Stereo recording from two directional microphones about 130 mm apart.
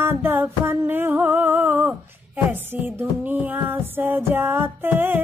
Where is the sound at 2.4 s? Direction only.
15° right (ahead or behind).